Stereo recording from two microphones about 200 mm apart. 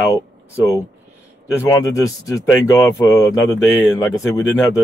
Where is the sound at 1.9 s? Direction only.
15° left (ahead or behind).